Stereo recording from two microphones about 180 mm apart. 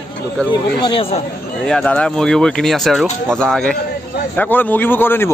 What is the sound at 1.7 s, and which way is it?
Speech, 5° left (ahead or behind).